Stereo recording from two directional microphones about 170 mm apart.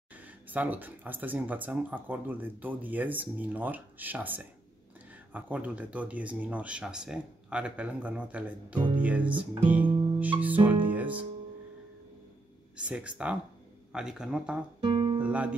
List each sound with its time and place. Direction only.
0.1 s speech: 10° right (ahead or behind)
9.7 s music: 10° right (ahead or behind)
12.7 s speech: 5° right (ahead or behind)
14.8 s guitar: 30° right (ahead or behind)
15.2 s speech: 10° right (ahead or behind)